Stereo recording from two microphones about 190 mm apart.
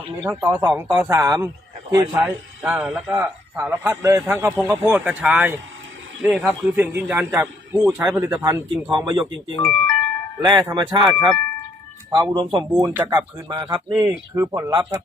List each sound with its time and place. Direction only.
0.2 s a man's voice: 10° right (ahead or behind)
9.6 s speech: 10° left (ahead or behind)
10.4 s speech: 20° right (ahead or behind)
12.3 s speech: 25° right (ahead or behind)
12.7 s a man's voice: 10° right (ahead or behind)
13.1 s speech: 20° right (ahead or behind)
13.7 s a man's voice: 5° right (ahead or behind)